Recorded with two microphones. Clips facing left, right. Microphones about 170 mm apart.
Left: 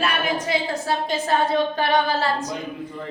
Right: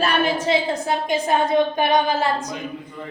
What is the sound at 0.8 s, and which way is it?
A man's voice, 15° right (ahead or behind).